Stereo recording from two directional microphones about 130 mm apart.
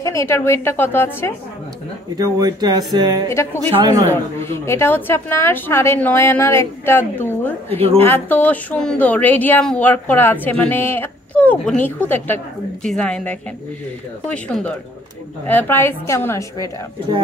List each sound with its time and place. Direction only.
0.0 s a woman's voice: 20° left (ahead or behind)
2.1 s speech: 30° right (ahead or behind)
3.3 s a woman's voice: 20° left (ahead or behind)
7.7 s a woman's voice: 50° right (ahead or behind)
8.0 s speech: 15° left (ahead or behind)